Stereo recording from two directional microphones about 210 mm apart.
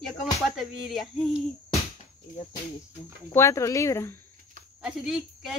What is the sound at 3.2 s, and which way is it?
Speech, 15° left (ahead or behind).